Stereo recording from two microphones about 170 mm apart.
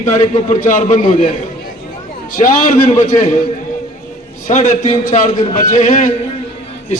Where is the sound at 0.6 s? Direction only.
45° left (ahead or behind).